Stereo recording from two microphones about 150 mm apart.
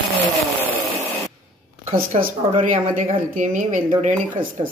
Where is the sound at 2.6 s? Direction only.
60° right (ahead or behind).